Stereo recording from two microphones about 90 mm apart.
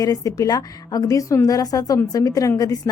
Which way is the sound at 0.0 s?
40° left (ahead or behind).